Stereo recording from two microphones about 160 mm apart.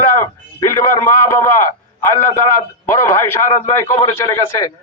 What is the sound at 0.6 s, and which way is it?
A man's voice, 20° left (ahead or behind).